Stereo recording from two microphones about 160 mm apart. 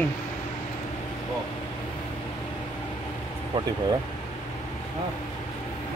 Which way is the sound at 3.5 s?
30° right (ahead or behind).